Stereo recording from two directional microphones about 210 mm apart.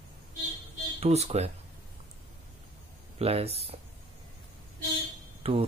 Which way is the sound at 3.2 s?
30° right (ahead or behind).